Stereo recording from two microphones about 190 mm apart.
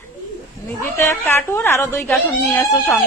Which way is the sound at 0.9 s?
15° left (ahead or behind).